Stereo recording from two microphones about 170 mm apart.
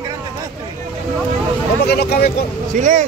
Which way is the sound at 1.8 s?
70° left (ahead or behind).